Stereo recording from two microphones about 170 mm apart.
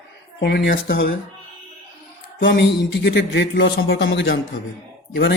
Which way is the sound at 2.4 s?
90° left.